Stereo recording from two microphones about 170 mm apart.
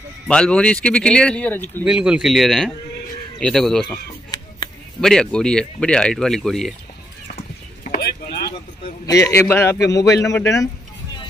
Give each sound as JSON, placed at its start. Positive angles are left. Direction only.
{"t": 0.3, "sound": "speech", "side_deg": 5}
{"t": 1.9, "sound": "speech", "side_deg": -5}
{"t": 3.9, "sound": "a sound", "side_deg": 25}
{"t": 5.0, "sound": "speech", "side_deg": 5}
{"t": 7.3, "sound": "clip-clop", "side_deg": 55}
{"t": 9.0, "sound": "a man's voice", "side_deg": 20}